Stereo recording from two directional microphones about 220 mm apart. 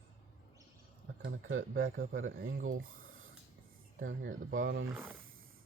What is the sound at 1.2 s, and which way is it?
Speech, 60° right (ahead or behind).